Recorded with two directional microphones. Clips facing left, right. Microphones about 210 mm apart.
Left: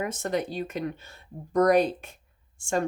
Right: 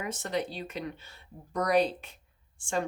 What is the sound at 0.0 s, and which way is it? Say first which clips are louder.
Speech: left 4 dB; 50° left (ahead or behind).